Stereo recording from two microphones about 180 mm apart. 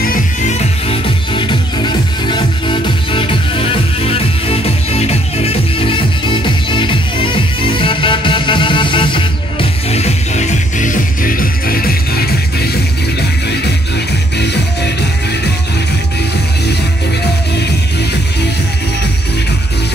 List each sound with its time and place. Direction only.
0.0 s music: 50° left (ahead or behind)
0.8 s music: 30° left (ahead or behind); by 14.9 s 70° left (ahead or behind)